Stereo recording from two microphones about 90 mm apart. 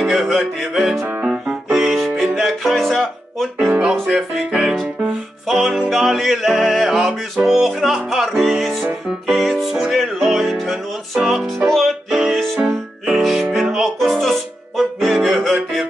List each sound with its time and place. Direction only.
0.0 s music: centre (ahead or behind)